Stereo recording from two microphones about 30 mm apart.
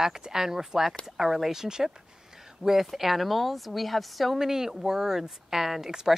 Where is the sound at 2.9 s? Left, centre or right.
Centre.